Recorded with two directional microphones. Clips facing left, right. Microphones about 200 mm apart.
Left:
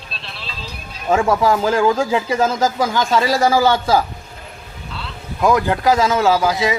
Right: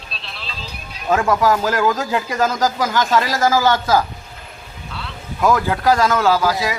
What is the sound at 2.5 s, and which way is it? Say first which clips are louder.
Speech: left 1 dB; 25° left (ahead or behind).